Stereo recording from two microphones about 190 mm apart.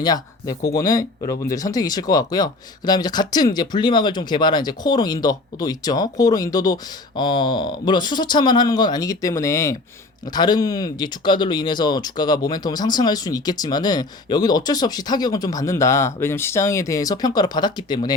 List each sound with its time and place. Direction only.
0.0 s speech: 20° left (ahead or behind)